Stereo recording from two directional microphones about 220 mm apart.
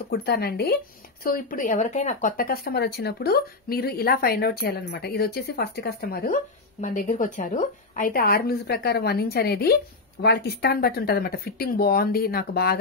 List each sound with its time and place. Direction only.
0.1 s speech: 45° left (ahead or behind)